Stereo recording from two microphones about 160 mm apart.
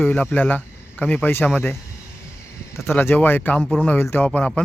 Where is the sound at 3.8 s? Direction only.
10° left (ahead or behind).